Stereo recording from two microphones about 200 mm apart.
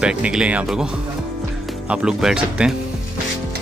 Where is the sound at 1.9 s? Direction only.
5° right (ahead or behind).